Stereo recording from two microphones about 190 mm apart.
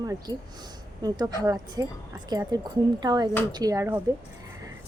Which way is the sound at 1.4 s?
20° right (ahead or behind).